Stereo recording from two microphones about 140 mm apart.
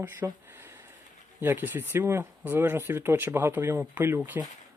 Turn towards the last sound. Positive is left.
turn(degrees=-15)  # may be behind; listen again after turning